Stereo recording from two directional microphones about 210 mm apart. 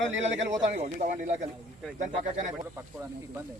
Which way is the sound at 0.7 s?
35° right (ahead or behind).